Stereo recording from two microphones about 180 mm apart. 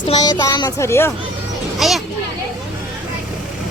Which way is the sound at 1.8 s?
Centre (ahead or behind).